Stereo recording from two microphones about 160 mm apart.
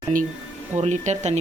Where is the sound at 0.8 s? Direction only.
45° right (ahead or behind).